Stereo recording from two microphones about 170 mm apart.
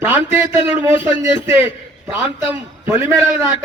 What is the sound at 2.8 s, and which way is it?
Speech, 15° right (ahead or behind).